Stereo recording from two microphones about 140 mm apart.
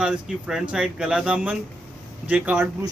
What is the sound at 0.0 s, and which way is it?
Speech, 5° right (ahead or behind).